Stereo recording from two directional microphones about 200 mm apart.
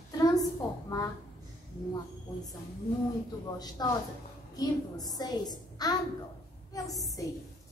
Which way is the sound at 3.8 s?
20° left (ahead or behind).